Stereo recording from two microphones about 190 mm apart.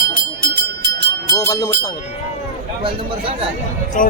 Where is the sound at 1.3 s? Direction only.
20° left (ahead or behind).